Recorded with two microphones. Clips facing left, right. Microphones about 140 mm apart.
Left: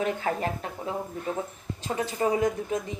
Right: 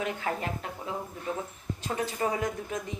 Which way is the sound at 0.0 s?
30° left (ahead or behind).